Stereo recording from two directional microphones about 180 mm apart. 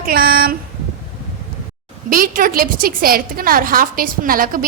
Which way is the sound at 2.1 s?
50° right (ahead or behind).